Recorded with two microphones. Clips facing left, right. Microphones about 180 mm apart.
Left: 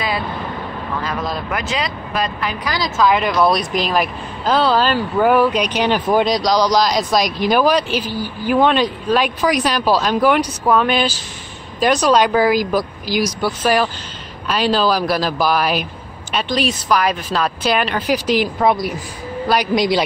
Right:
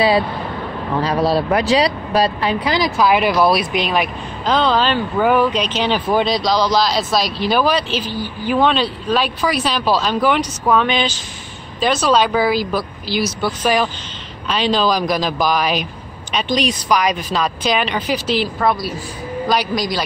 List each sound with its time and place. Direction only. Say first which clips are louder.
1.0 s speech: right 10 dB; 35° right (ahead or behind)
2.8 s a man's voice: left 1 dB; 15° right (ahead or behind); by 19.7 s 10° left (ahead or behind)
19.7 s a man's voice: left 5 dB; 25° left (ahead or behind)